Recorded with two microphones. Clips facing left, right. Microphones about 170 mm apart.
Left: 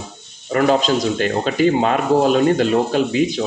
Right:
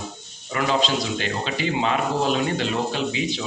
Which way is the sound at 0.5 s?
45° left (ahead or behind).